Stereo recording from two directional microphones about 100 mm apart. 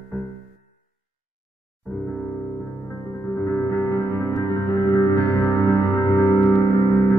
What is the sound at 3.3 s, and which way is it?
Music, 25° left (ahead or behind).